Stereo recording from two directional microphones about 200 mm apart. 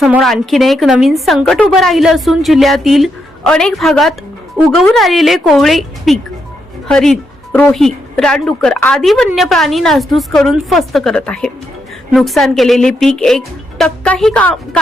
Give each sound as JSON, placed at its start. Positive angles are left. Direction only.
{"t": 0.0, "sound": "a woman's voice", "side_deg": 0}